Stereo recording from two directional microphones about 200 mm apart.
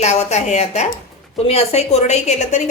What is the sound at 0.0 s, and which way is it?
A woman's voice, 35° left (ahead or behind).